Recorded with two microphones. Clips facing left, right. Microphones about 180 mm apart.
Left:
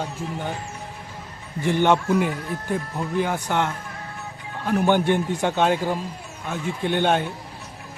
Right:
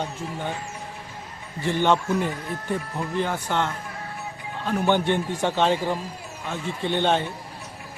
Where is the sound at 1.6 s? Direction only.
15° left (ahead or behind).